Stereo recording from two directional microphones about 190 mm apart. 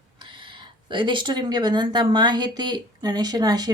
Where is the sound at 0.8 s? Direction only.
25° right (ahead or behind).